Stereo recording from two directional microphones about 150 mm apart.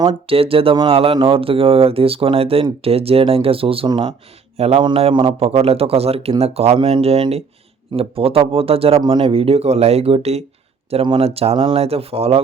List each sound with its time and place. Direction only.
0.0 s speech: 25° right (ahead or behind)
0.3 s speech: 40° right (ahead or behind)
4.5 s speech: 45° right (ahead or behind)